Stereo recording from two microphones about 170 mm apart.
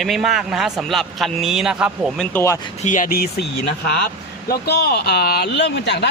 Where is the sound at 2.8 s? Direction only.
50° left (ahead or behind).